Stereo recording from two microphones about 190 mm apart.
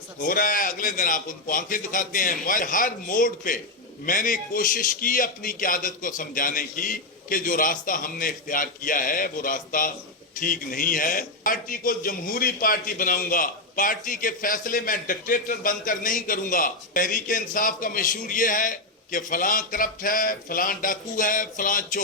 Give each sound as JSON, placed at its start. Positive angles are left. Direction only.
{"t": 0.2, "sound": "a man's voice", "side_deg": 45}